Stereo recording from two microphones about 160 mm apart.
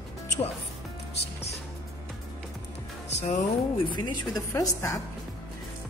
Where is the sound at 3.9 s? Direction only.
25° left (ahead or behind).